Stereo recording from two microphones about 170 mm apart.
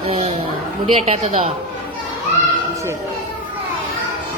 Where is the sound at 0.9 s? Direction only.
40° right (ahead or behind).